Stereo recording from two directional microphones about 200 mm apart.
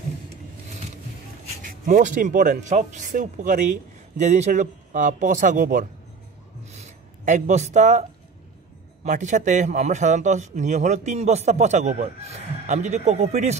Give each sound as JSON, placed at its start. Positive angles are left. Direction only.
{"t": 1.6, "sound": "a man's voice", "side_deg": -40}
{"t": 6.6, "sound": "a sound", "side_deg": -35}
{"t": 9.0, "sound": "a man's voice", "side_deg": -35}